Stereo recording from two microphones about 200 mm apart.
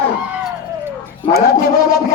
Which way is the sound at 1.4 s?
50° left (ahead or behind).